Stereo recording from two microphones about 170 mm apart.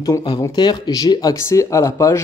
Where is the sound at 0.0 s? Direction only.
25° left (ahead or behind).